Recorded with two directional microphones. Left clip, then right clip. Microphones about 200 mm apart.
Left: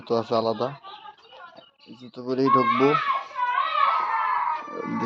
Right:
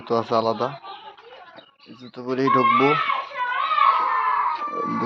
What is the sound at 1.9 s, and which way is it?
Speech, 10° left (ahead or behind).